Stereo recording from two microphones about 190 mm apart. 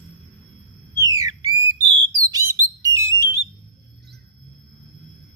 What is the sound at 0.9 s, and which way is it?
Bird, 20° right (ahead or behind).